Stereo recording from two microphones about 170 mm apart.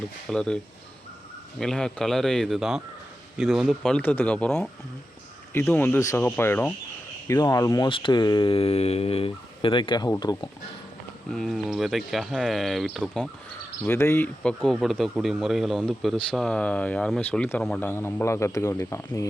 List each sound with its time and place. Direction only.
0.3 s speech: 5° left (ahead or behind); by 7.9 s 20° left (ahead or behind)
7.9 s speech: 30° left (ahead or behind)
11.3 s speech: centre (ahead or behind)
13.8 s speech: 15° left (ahead or behind)
14.6 s speech: centre (ahead or behind); by 19.3 s 15° left (ahead or behind)